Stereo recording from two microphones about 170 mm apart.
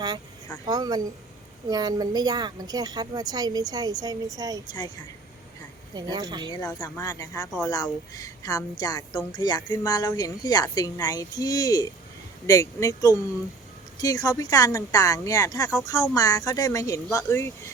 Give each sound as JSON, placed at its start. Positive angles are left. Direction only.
{"t": 0.7, "sound": "a woman's voice", "side_deg": -20}
{"t": 5.9, "sound": "a woman's voice", "side_deg": -25}
{"t": 7.0, "sound": "speech", "side_deg": 20}